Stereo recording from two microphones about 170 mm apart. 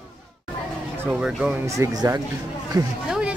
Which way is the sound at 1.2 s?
10° right (ahead or behind).